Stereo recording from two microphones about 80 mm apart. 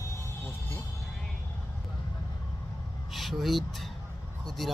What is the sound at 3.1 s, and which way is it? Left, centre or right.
Speech, centre.